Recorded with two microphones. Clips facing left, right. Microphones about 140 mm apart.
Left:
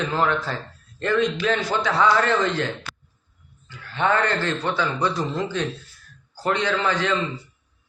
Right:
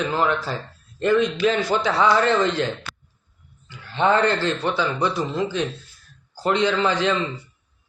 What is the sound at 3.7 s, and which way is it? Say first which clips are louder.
Speech: right 3 dB; 25° right (ahead or behind).